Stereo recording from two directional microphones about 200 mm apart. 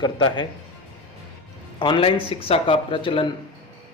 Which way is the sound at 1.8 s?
25° left (ahead or behind).